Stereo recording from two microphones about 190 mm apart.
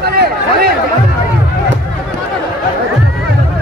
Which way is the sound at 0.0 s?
55° right (ahead or behind).